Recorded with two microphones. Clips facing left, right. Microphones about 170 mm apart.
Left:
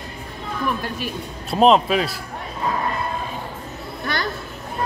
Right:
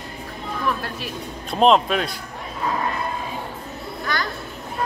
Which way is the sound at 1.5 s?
5° left (ahead or behind).